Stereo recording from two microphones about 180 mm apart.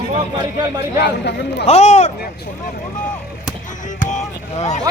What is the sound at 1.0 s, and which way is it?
Speech, 70° left (ahead or behind).